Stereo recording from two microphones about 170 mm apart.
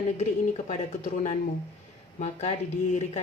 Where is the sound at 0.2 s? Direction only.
40° left (ahead or behind).